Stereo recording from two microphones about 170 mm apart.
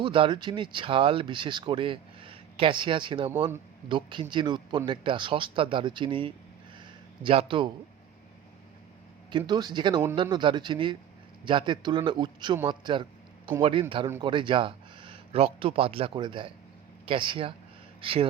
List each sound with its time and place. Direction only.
0.0 s speech: 30° right (ahead or behind)
6.7 s a sound: 30° right (ahead or behind)
9.5 s speech: 25° right (ahead or behind)